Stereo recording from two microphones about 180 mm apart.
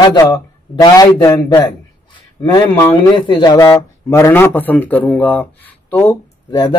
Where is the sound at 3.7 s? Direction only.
15° left (ahead or behind).